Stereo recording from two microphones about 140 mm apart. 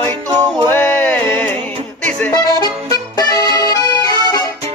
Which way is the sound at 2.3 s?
25° left (ahead or behind).